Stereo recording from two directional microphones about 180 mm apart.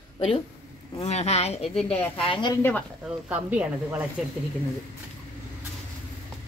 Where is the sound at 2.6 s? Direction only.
10° left (ahead or behind).